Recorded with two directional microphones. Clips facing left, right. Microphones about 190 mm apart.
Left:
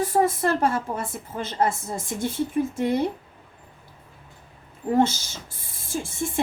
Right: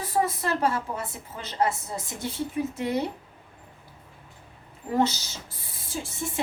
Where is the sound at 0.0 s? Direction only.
50° left (ahead or behind).